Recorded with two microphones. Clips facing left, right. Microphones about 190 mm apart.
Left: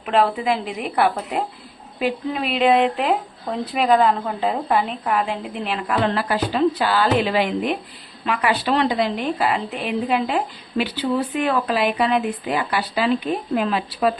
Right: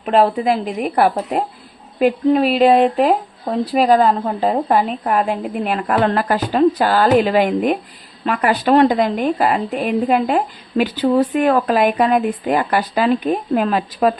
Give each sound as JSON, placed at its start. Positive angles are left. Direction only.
{"t": 0.0, "sound": "a woman's voice", "side_deg": -40}